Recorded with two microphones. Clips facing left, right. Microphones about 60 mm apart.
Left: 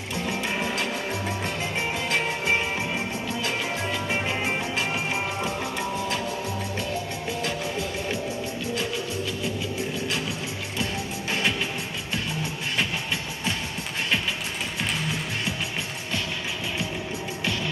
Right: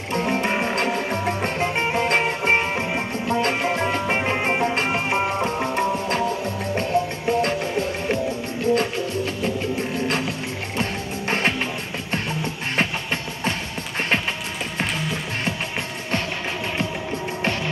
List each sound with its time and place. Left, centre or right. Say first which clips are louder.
0.1 s music: right 7 dB; right
12.7 s music: right 4 dB; right